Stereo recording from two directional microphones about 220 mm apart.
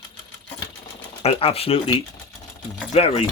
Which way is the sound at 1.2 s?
25° left (ahead or behind).